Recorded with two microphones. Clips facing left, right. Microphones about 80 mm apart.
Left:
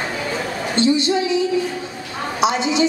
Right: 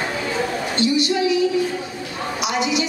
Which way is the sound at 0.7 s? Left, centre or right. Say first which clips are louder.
Left 4 dB; left.